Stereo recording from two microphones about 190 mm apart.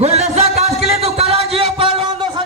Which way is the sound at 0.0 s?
35° right (ahead or behind).